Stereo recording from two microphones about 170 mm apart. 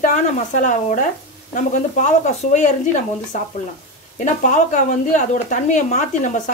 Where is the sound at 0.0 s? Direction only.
45° left (ahead or behind).